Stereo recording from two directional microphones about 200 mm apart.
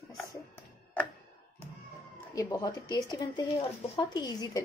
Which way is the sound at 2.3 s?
20° left (ahead or behind).